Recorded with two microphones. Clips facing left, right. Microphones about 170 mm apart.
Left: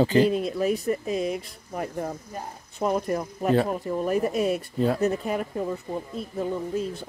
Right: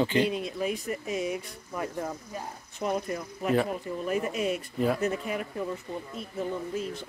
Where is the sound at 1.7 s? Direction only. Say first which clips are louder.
Left 3 dB; 55° left (ahead or behind).